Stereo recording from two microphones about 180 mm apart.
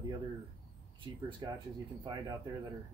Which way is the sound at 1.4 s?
25° right (ahead or behind).